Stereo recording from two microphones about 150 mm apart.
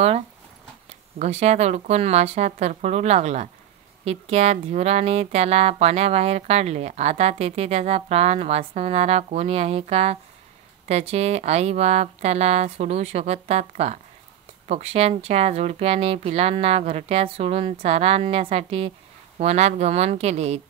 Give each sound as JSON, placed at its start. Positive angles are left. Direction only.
{"t": 0.8, "sound": "speech", "side_deg": -45}